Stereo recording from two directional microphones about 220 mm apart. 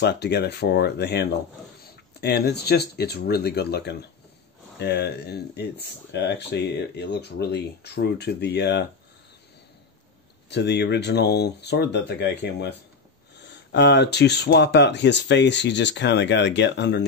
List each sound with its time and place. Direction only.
0.0 s speech: 50° left (ahead or behind)
10.5 s speech: 50° left (ahead or behind)